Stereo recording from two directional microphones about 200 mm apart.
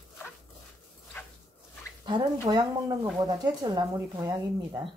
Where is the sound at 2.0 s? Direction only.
20° right (ahead or behind).